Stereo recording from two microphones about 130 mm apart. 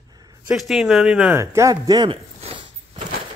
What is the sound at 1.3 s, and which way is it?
Speech, 20° right (ahead or behind).